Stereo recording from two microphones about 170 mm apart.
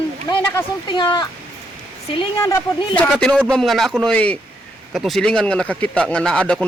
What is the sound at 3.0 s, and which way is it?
A man's voice, 5° left (ahead or behind).